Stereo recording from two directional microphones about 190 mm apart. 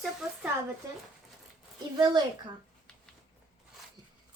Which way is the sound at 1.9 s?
20° right (ahead or behind).